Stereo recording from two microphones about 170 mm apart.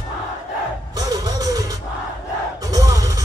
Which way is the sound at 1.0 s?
20° right (ahead or behind).